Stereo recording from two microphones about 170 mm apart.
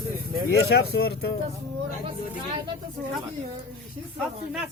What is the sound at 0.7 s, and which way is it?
Speech, 70° left (ahead or behind).